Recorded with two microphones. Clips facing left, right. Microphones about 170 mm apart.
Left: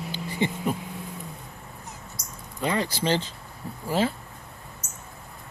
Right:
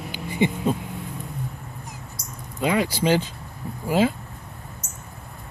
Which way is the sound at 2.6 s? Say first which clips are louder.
Right 4 dB; 15° right (ahead or behind).